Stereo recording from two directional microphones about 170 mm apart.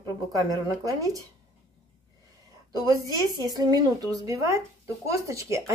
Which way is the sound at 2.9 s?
20° right (ahead or behind).